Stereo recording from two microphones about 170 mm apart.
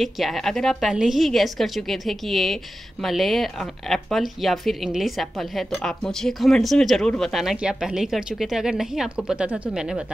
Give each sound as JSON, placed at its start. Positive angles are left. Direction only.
{"t": 0.0, "sound": "a woman's voice", "side_deg": 0}